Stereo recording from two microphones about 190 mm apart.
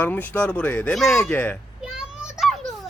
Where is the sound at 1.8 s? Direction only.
5° right (ahead or behind).